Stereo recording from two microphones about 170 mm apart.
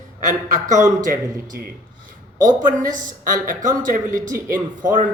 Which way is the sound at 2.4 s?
50° right (ahead or behind).